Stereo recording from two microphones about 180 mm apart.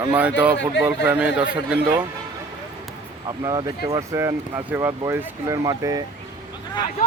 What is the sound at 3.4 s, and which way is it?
Speech, 20° right (ahead or behind).